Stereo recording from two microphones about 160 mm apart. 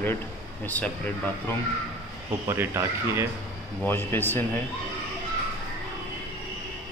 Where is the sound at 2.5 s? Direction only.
15° right (ahead or behind).